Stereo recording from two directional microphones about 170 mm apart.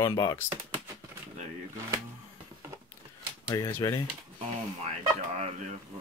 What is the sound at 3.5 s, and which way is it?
Speech, 20° left (ahead or behind).